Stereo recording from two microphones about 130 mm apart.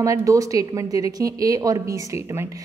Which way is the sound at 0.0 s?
25° right (ahead or behind).